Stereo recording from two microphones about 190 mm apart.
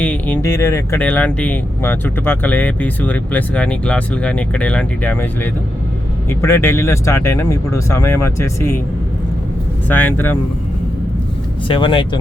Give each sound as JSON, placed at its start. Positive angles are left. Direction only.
{"t": 0.0, "sound": "speech", "side_deg": 10}
{"t": 9.9, "sound": "speech", "side_deg": 10}
{"t": 11.7, "sound": "speech", "side_deg": 25}